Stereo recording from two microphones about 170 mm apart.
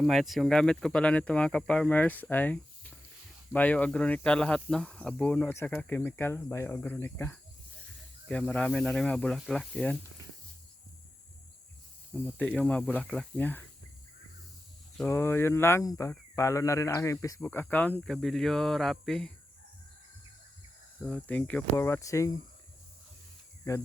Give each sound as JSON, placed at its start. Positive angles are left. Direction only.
{"t": 0.0, "sound": "speech", "side_deg": 0}
{"t": 12.1, "sound": "speech", "side_deg": 10}
{"t": 14.9, "sound": "speech", "side_deg": 10}
{"t": 21.1, "sound": "speech", "side_deg": 10}
{"t": 23.6, "sound": "speech", "side_deg": 15}